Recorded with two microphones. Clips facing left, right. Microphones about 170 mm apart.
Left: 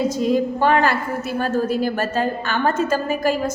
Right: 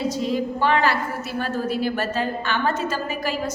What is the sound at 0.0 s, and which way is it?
A woman's voice, 45° left (ahead or behind).